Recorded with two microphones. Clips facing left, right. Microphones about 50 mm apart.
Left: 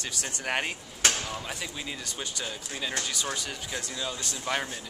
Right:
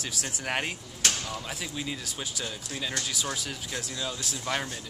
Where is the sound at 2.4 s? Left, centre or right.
Centre.